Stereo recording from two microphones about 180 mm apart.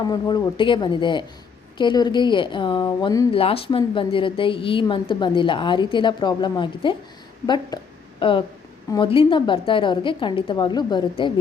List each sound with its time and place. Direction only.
0.1 s a woman's voice: 25° left (ahead or behind)
3.3 s a woman's voice: 30° left (ahead or behind)